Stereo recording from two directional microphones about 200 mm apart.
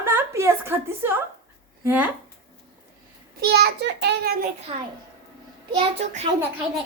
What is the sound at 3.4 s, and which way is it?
A child's voice, 55° right (ahead or behind).